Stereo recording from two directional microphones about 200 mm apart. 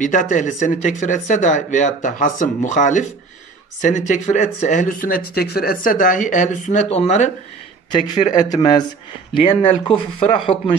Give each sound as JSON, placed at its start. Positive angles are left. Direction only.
{"t": 0.0, "sound": "speech", "side_deg": 40}
{"t": 7.9, "sound": "speech", "side_deg": 25}